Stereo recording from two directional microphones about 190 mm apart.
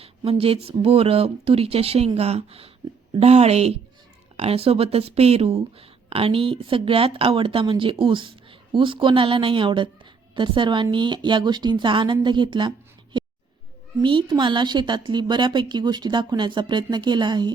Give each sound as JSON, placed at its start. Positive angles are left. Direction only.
{"t": 0.0, "sound": "speech", "side_deg": -30}
{"t": 13.1, "sound": "a sound", "side_deg": -25}
{"t": 14.0, "sound": "speech", "side_deg": -25}